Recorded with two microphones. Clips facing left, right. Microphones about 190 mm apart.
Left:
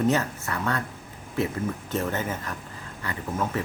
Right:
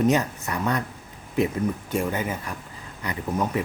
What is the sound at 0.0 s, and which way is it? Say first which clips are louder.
Speech: right 2 dB; 15° right (ahead or behind).